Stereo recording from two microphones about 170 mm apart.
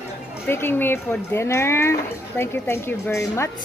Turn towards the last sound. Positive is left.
turn(degrees=15)  # may be behind; listen again after turning